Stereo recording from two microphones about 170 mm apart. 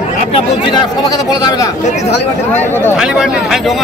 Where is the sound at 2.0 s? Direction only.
40° left (ahead or behind).